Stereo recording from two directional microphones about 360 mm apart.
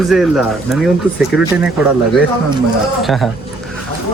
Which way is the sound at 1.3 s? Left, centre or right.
Left.